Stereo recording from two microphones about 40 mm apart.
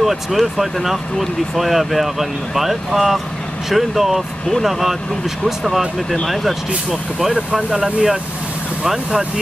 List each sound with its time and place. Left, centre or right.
0.0 s speech: centre
6.2 s speech: centre
7.3 s speech: right